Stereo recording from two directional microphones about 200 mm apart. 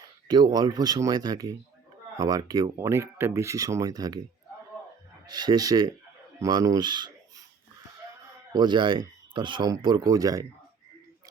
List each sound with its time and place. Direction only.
0.3 s speech: 20° right (ahead or behind)
5.2 s speech: 20° right (ahead or behind)
8.5 s speech: 25° right (ahead or behind)